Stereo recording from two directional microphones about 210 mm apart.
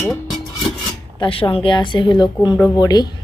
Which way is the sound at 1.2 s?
25° left (ahead or behind).